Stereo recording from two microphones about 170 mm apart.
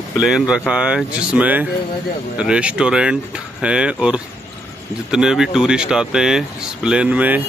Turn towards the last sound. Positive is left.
turn(degrees=-10)  # may be behind; listen again after turning